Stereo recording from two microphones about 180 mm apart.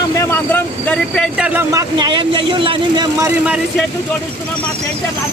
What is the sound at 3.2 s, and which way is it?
Speech, 5° right (ahead or behind).